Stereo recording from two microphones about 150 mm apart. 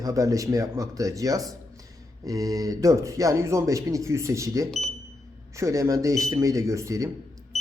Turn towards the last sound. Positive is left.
turn(degrees=-20)  # may be behind; listen again after turning